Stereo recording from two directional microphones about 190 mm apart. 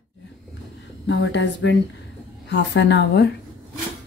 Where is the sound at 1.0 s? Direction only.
70° left (ahead or behind).